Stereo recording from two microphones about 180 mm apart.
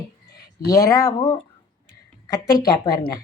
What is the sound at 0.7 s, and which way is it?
A woman's voice, 20° left (ahead or behind).